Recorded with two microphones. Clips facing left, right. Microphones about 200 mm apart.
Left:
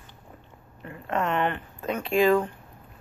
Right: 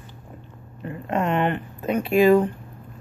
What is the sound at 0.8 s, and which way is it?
Speech, 20° right (ahead or behind).